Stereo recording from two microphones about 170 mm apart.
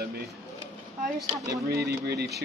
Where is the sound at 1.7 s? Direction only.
70° right (ahead or behind).